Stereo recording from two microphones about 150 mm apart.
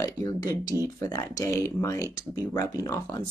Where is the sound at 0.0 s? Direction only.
25° left (ahead or behind).